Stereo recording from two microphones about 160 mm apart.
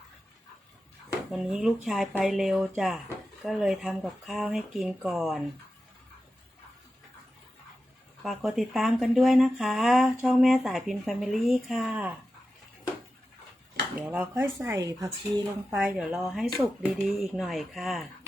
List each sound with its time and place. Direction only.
1.3 s speech: 5° right (ahead or behind)
8.2 s speech: centre (ahead or behind)
14.0 s speech: 10° right (ahead or behind)
15.7 s speech: 10° right (ahead or behind)